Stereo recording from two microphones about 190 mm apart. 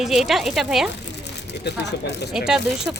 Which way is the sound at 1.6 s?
60° left (ahead or behind).